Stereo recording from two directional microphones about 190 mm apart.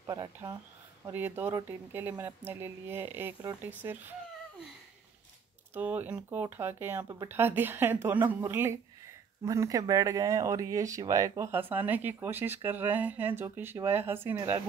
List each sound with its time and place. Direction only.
0.0 s speech: 20° right (ahead or behind)
5.8 s speech: 10° right (ahead or behind)